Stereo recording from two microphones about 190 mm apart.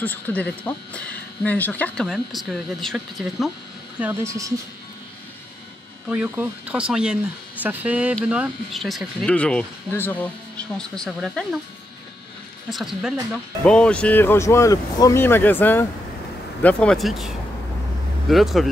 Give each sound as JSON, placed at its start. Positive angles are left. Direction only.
{"t": 0.0, "sound": "speech", "side_deg": 10}
{"t": 4.0, "sound": "speech", "side_deg": -15}
{"t": 6.0, "sound": "speech", "side_deg": -5}
{"t": 12.6, "sound": "speech", "side_deg": 0}
{"t": 18.3, "sound": "speech", "side_deg": 0}